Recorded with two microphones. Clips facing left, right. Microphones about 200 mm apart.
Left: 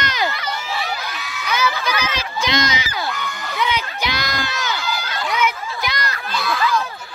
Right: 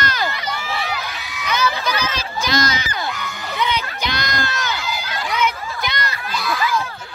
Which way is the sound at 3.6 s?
5° left (ahead or behind).